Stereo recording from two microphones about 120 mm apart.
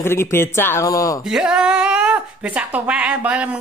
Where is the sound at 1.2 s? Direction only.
5° right (ahead or behind).